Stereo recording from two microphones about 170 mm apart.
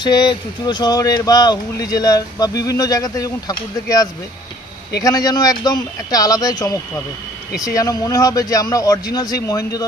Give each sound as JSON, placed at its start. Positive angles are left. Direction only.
{"t": 0.0, "sound": "speech", "side_deg": 25}
{"t": 5.0, "sound": "speech", "side_deg": 20}